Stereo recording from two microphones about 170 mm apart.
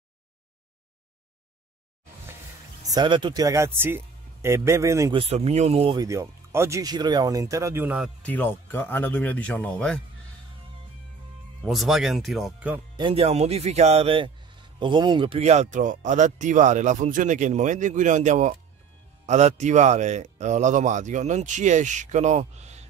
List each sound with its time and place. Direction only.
2.9 s speech: 25° right (ahead or behind)
5.1 s speech: 35° right (ahead or behind)
5.9 s speech: 15° right (ahead or behind)
8.2 s speech: 10° left (ahead or behind)
11.6 s speech: centre (ahead or behind)
12.9 s speech: 30° right (ahead or behind)